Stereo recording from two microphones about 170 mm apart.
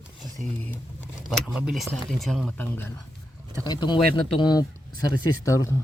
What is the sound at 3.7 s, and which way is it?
Speech, 25° left (ahead or behind).